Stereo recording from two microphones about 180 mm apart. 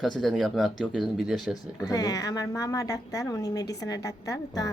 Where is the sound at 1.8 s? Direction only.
20° left (ahead or behind).